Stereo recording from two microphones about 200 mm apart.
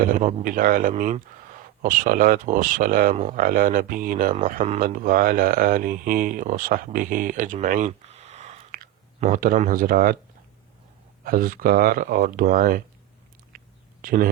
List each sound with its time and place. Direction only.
0.0 s a man's voice: 40° right (ahead or behind)
11.2 s speech: 45° right (ahead or behind)
14.0 s speech: 45° right (ahead or behind)